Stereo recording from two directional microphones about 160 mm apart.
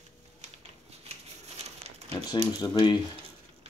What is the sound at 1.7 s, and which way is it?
Crumpling, 45° right (ahead or behind).